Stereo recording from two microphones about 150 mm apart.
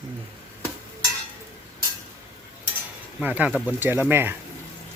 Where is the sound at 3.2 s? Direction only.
10° right (ahead or behind).